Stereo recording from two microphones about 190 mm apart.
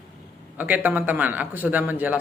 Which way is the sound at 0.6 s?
10° right (ahead or behind).